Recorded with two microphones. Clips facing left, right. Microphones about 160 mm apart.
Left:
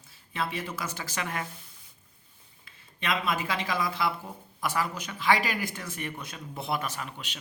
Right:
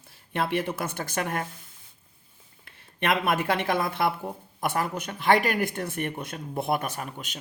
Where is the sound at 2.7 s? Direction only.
60° right (ahead or behind); by 7.4 s 45° right (ahead or behind).